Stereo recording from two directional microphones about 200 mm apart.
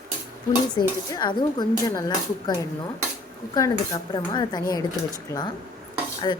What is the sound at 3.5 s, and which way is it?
Speech, 20° left (ahead or behind).